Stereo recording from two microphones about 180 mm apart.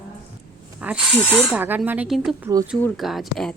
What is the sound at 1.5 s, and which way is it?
A woman's voice, 10° right (ahead or behind).